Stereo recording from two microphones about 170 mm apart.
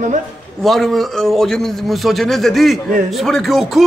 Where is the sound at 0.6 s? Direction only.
Centre (ahead or behind).